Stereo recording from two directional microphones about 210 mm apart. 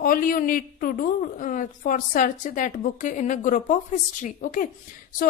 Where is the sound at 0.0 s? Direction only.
40° left (ahead or behind).